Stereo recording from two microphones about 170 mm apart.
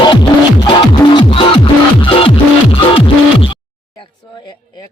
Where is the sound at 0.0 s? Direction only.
25° left (ahead or behind).